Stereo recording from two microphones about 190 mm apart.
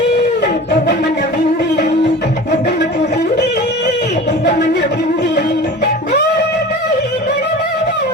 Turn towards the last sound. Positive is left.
turn(degrees=60)  # may be behind; listen again after turning